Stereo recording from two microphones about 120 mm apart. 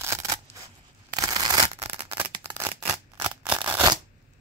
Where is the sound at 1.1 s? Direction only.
30° right (ahead or behind).